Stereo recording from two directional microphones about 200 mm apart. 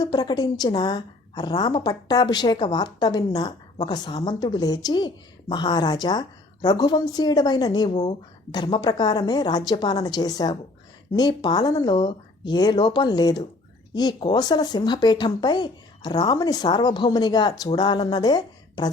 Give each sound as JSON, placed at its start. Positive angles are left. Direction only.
{"t": 0.0, "sound": "a woman's voice", "side_deg": 20}